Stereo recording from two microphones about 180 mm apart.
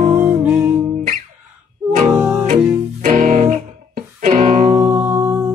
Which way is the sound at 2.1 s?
10° right (ahead or behind).